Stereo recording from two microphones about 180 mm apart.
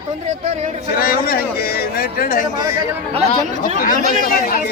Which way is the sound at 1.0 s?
55° left (ahead or behind).